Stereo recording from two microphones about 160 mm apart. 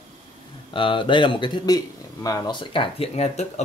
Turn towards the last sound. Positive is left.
turn(degrees=45)  # may be behind; listen again after turning